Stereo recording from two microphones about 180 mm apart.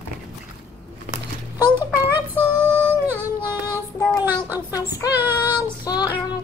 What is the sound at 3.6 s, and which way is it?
Child singing, 20° left (ahead or behind).